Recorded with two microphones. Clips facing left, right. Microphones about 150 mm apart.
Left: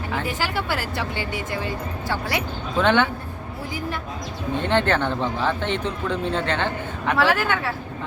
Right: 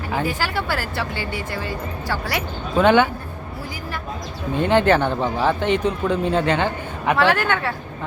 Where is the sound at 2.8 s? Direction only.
10° right (ahead or behind).